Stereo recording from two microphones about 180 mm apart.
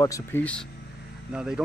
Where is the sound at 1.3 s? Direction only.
5° right (ahead or behind).